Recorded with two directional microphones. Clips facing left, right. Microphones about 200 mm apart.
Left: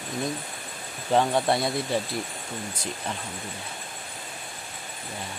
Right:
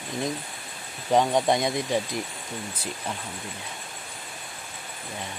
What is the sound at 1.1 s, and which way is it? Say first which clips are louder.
Speech: right 1 dB; 15° right (ahead or behind).